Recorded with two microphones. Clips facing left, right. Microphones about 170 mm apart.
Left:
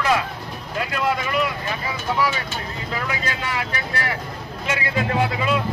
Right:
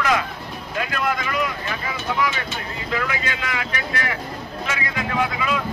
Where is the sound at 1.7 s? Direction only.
35° left (ahead or behind).